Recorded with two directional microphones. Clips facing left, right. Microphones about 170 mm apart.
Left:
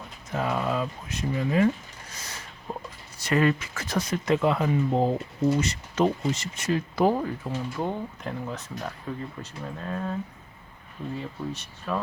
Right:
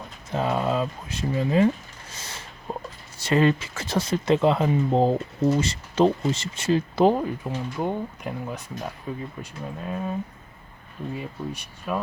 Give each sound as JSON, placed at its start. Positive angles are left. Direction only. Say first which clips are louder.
{"t": 0.3, "sound": "speech", "louder": "right 3 dB", "side_deg": -25}
{"t": 2.1, "sound": "a sound", "louder": "right 2 dB", "side_deg": -25}
{"t": 3.2, "sound": "speech", "louder": "right 3 dB", "side_deg": -25}